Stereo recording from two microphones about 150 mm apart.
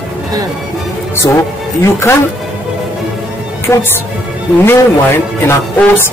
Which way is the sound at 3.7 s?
15° left (ahead or behind).